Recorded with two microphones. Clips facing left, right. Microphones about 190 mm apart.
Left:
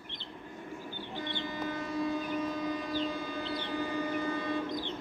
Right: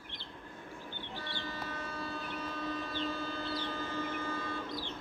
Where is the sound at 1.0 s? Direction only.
20° left (ahead or behind).